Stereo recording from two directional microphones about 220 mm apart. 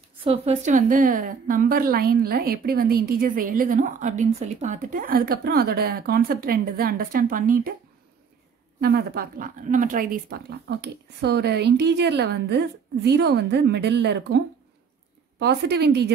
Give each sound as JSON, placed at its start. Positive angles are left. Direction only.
{"t": 0.2, "sound": "a woman's voice", "side_deg": -25}
{"t": 8.8, "sound": "a woman's voice", "side_deg": -45}
{"t": 10.7, "sound": "a woman's voice", "side_deg": -50}